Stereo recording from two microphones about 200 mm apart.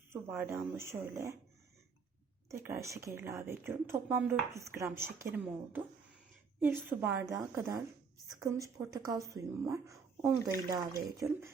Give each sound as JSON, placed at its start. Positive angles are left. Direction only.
{"t": 0.1, "sound": "a woman's voice", "side_deg": -10}
{"t": 2.5, "sound": "a woman's voice", "side_deg": -15}